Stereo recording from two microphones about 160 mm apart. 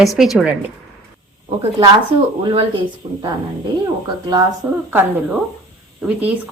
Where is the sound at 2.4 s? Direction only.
35° right (ahead or behind).